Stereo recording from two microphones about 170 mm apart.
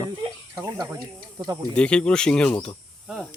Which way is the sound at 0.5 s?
20° right (ahead or behind).